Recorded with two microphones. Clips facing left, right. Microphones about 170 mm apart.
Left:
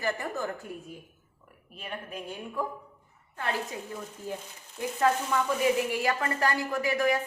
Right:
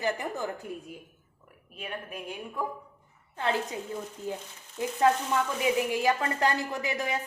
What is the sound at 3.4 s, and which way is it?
Speech, 25° right (ahead or behind).